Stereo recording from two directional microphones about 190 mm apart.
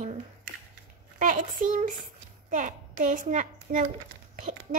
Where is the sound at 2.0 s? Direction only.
45° right (ahead or behind).